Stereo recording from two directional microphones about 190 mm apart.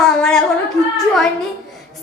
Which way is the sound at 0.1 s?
5° left (ahead or behind).